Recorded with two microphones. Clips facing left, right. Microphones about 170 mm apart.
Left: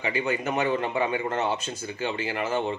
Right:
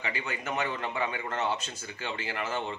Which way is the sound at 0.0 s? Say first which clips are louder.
Left 8 dB; 20° left (ahead or behind).